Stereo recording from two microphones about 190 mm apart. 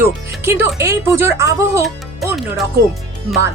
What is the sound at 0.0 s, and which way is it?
Speech, 10° right (ahead or behind).